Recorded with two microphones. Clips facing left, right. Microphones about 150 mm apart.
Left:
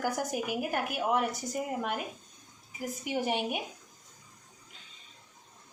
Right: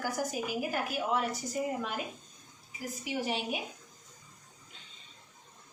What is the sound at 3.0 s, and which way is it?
Speech, 55° left (ahead or behind).